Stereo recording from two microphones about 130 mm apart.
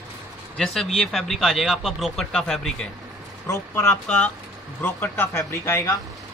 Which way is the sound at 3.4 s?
20° left (ahead or behind).